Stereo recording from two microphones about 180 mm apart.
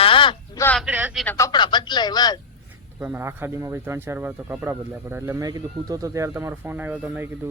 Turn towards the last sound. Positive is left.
turn(degrees=-5)  # may be behind; listen again after turning